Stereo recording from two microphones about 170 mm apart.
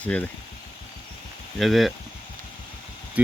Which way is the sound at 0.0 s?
10° left (ahead or behind).